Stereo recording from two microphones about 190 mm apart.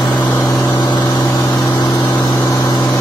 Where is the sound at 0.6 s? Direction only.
25° left (ahead or behind).